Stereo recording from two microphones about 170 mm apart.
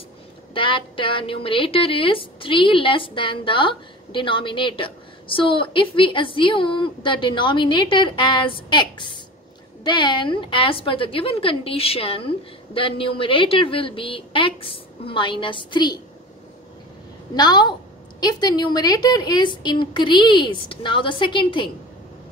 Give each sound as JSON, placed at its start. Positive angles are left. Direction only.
{"t": 0.6, "sound": "a woman's voice", "side_deg": 30}
{"t": 17.3, "sound": "a woman's voice", "side_deg": 25}